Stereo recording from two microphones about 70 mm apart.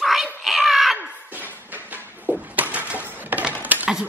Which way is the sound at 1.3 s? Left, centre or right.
Right.